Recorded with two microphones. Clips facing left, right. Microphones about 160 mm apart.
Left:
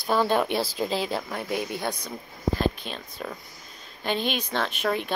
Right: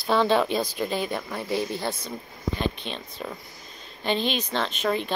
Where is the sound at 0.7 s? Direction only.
90° left.